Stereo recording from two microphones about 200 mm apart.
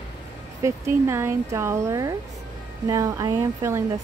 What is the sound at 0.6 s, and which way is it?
Speech, 15° right (ahead or behind).